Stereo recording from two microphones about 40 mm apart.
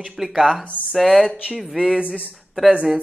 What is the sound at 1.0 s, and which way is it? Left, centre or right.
Speech, centre.